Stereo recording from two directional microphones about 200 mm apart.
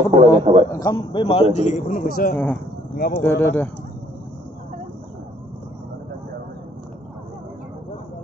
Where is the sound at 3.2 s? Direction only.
10° left (ahead or behind).